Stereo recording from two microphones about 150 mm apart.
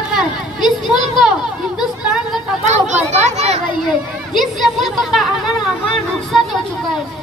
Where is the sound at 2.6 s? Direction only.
50° right (ahead or behind).